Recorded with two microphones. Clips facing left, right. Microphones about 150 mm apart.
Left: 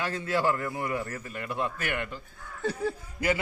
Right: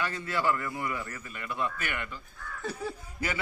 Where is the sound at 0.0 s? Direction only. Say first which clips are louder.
Left 3 dB; 30° left (ahead or behind).